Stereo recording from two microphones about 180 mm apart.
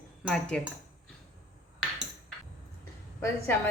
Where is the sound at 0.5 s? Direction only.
5° left (ahead or behind).